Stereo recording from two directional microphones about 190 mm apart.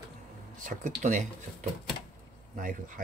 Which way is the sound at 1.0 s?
35° right (ahead or behind).